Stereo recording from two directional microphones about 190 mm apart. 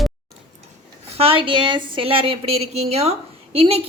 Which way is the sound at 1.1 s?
30° right (ahead or behind).